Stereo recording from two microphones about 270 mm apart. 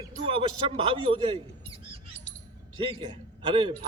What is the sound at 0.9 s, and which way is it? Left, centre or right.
A man's voice, centre.